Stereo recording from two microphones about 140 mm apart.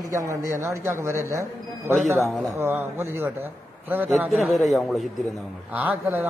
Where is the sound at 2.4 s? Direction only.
15° right (ahead or behind).